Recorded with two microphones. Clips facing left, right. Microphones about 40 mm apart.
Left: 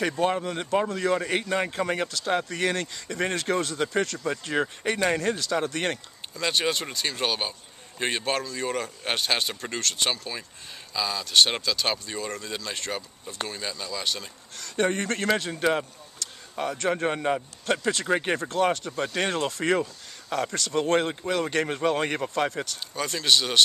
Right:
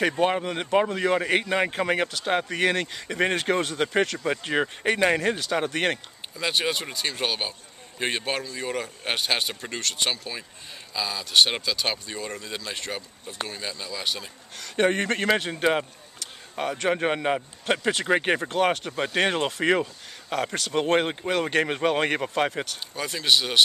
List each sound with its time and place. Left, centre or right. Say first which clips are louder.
0.0 s a man's voice: right 2 dB; right
6.3 s speech: even; centre
14.8 s a man's voice: right 3 dB; right
18.6 s speech: left 2 dB; right
18.9 s a man's voice: right 3 dB; centre
22.9 s speech: even; centre